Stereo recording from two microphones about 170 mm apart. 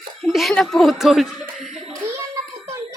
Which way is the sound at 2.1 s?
15° right (ahead or behind).